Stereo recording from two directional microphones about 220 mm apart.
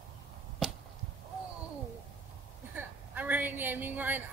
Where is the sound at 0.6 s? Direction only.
Centre (ahead or behind).